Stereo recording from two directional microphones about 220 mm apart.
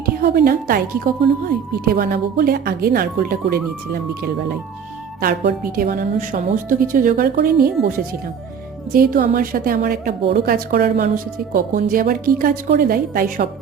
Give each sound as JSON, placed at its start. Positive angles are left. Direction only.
{"t": 0.0, "sound": "a woman's voice", "side_deg": -40}
{"t": 1.8, "sound": "a woman's voice", "side_deg": -45}
{"t": 5.2, "sound": "a woman's voice", "side_deg": -45}